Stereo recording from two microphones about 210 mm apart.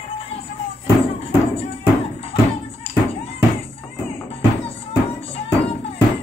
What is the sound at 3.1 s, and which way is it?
Music, 30° left (ahead or behind).